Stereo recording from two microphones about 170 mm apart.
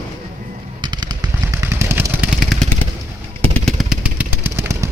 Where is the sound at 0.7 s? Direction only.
25° right (ahead or behind).